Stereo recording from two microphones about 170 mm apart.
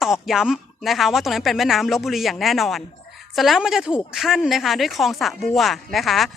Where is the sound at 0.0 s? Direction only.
5° right (ahead or behind).